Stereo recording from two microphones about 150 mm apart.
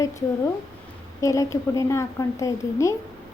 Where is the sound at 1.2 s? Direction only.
20° left (ahead or behind).